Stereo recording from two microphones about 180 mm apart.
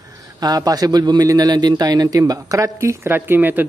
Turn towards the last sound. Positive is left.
turn(degrees=-10)  # may be behind; listen again after turning